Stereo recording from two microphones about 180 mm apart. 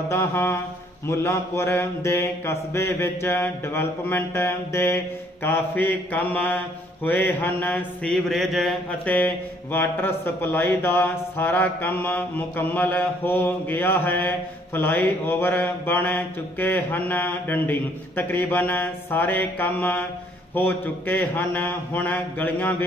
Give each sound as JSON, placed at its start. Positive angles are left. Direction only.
{"t": 0.1, "sound": "mantra", "side_deg": 15}